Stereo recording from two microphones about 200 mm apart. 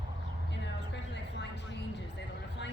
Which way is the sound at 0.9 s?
60° left (ahead or behind).